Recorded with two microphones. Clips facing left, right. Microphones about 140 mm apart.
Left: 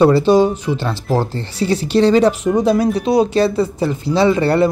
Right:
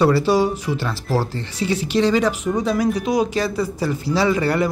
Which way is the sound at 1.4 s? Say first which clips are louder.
Left 4 dB; 30° left (ahead or behind).